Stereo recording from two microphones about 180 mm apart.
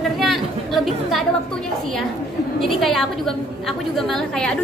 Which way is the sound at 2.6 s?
Centre (ahead or behind).